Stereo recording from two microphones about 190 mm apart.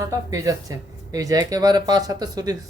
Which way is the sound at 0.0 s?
20° right (ahead or behind).